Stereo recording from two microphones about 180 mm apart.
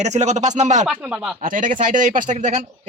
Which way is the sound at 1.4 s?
45° right (ahead or behind).